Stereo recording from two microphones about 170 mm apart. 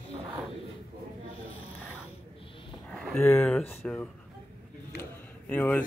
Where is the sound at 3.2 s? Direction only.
15° left (ahead or behind).